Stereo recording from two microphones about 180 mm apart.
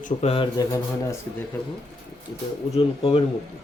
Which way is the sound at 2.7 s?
30° left (ahead or behind).